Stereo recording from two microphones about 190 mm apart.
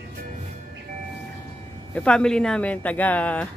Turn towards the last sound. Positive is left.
turn(degrees=5)  # may be behind; listen again after turning